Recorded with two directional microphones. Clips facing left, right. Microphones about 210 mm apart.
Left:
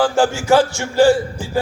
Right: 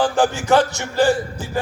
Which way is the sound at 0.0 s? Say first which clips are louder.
Left 2 dB; 15° right (ahead or behind).